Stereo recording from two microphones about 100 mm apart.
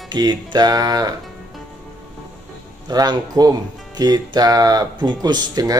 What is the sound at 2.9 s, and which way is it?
Speech, 45° right (ahead or behind).